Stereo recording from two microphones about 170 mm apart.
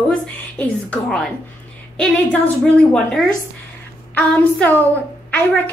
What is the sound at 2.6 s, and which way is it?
A woman's voice, 5° left (ahead or behind).